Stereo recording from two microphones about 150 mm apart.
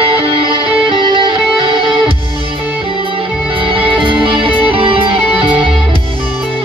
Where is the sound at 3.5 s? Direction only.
35° right (ahead or behind).